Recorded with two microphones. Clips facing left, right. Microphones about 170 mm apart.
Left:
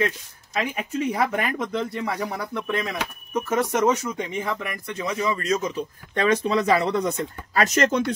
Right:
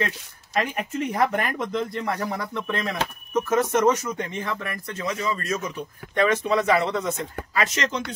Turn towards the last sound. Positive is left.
turn(degrees=45)  # may be behind; listen again after turning